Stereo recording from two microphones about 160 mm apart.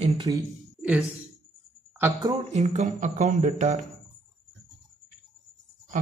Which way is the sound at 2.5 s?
45° right (ahead or behind).